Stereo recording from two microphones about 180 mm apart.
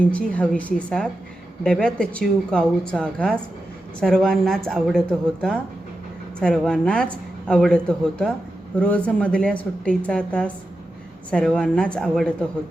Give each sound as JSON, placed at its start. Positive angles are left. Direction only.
{"t": 0.0, "sound": "a woman's voice", "side_deg": 5}